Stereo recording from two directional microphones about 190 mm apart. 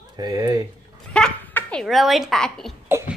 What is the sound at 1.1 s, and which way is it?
Speech, 5° left (ahead or behind).